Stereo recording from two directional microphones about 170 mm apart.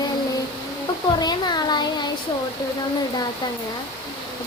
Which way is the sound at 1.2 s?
25° left (ahead or behind).